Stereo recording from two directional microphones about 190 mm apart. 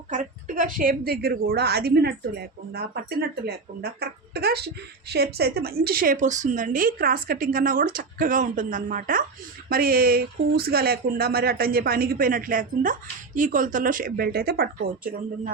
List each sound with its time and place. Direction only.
0.1 s a woman's voice: 40° right (ahead or behind)